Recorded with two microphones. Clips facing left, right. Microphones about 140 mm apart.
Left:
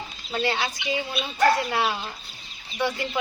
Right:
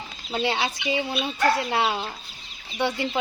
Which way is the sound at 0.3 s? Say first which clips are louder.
Right 1 dB; 15° right (ahead or behind).